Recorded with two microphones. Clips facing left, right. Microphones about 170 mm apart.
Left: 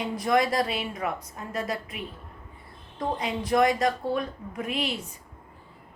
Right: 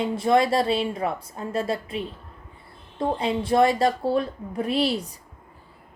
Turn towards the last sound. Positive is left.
turn(degrees=-35)  # may be behind; listen again after turning